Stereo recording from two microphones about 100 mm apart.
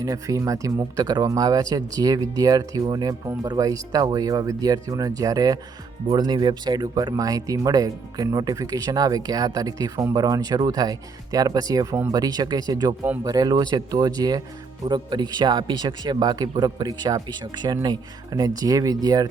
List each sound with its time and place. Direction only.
0.0 s speech: 35° right (ahead or behind)